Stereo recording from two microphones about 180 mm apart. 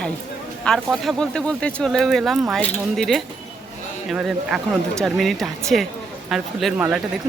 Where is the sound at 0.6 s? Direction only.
Centre (ahead or behind).